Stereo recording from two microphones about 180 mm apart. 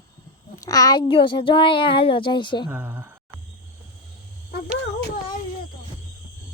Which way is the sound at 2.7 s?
10° right (ahead or behind).